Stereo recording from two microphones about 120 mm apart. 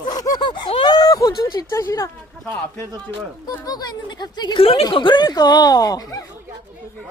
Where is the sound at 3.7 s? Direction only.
35° left (ahead or behind).